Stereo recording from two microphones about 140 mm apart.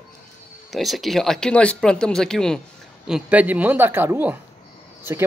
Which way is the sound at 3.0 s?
10° right (ahead or behind).